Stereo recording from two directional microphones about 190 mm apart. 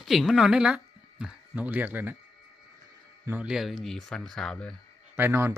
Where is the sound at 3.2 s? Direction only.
5° right (ahead or behind).